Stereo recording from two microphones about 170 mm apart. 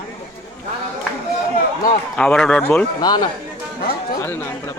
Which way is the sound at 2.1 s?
5° left (ahead or behind).